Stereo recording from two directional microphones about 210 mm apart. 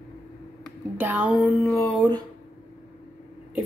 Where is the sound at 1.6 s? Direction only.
15° left (ahead or behind).